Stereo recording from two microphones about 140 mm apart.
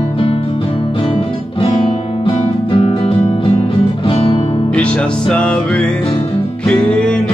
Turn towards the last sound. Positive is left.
turn(degrees=10)  # may be behind; listen again after turning